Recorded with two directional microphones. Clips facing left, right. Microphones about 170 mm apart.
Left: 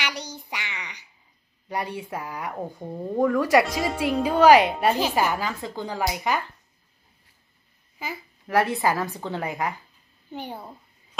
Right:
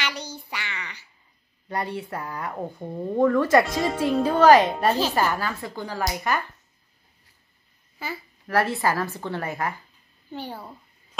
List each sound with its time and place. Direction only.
0.0 s a sound: 15° left (ahead or behind)
1.7 s a woman's voice: 15° left (ahead or behind)
3.6 s a woman's voice: centre (ahead or behind)
8.0 s a woman's voice: 15° left (ahead or behind)